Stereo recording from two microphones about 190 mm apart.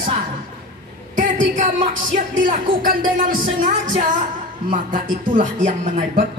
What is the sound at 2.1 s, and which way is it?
Speech, 45° right (ahead or behind).